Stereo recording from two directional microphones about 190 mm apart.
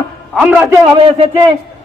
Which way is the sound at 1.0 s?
30° right (ahead or behind).